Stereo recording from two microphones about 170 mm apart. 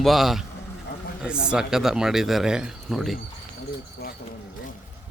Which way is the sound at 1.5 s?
5° right (ahead or behind).